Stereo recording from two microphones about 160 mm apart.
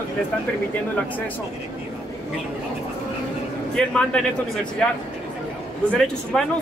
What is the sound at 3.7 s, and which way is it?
Speech, 5° left (ahead or behind).